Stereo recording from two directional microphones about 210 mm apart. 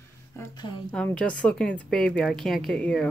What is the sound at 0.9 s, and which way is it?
A woman's voice, 5° left (ahead or behind).